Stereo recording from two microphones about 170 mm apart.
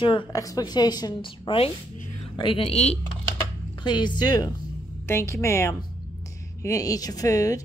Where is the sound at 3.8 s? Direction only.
25° left (ahead or behind).